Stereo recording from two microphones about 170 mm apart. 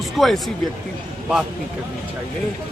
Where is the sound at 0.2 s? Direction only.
Centre (ahead or behind).